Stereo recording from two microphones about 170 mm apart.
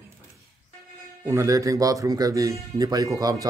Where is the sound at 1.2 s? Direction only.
20° right (ahead or behind).